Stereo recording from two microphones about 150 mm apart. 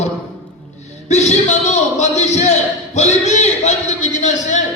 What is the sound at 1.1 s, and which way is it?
A man's voice, 50° left (ahead or behind).